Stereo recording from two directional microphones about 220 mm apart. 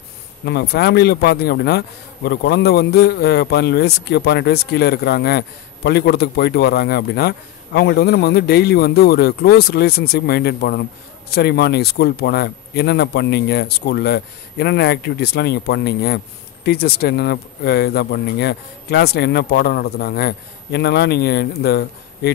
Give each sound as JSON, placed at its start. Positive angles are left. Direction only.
{"t": 0.5, "sound": "speech", "side_deg": 45}